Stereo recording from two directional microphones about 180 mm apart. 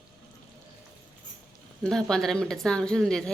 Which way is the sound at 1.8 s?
5° left (ahead or behind).